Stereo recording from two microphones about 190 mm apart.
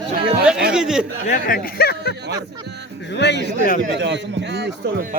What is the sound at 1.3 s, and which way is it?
Speech, 50° left (ahead or behind).